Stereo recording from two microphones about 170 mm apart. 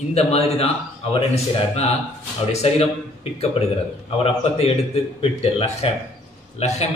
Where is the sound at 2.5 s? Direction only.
40° left (ahead or behind).